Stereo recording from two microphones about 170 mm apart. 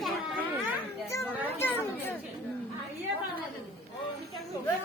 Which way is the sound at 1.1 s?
15° left (ahead or behind).